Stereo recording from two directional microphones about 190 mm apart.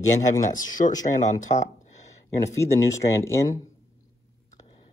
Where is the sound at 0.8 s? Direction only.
40° left (ahead or behind).